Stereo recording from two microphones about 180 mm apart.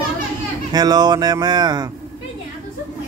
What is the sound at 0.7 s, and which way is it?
Speech, 20° right (ahead or behind).